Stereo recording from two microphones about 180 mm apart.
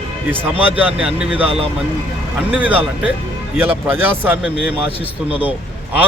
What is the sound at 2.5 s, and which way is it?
A man's voice, 10° right (ahead or behind).